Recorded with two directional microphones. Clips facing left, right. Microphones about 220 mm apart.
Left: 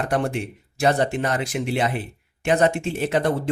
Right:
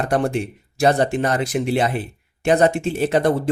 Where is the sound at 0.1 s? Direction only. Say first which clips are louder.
Right 3 dB; 35° right (ahead or behind).